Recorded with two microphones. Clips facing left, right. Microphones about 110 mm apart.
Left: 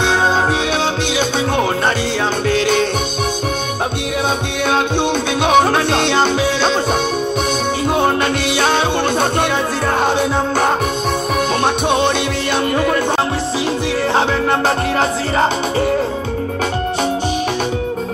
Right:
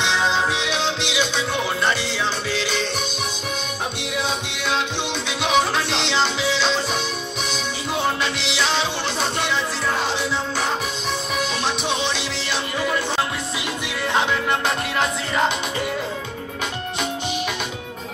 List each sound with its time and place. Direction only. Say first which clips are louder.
0.0 s music: left 6 dB; 50° left (ahead or behind)
5.4 s music: left 7 dB; 50° left (ahead or behind)
7.9 s music: left 6 dB; 50° left (ahead or behind)
11.6 s music: left 9 dB; 50° left (ahead or behind)
14.1 s music: left 3 dB; 35° left (ahead or behind)